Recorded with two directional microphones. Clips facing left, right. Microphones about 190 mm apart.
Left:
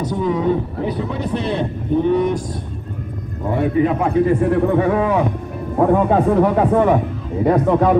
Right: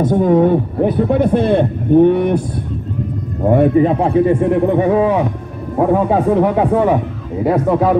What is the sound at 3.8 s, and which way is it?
Speech, 30° right (ahead or behind).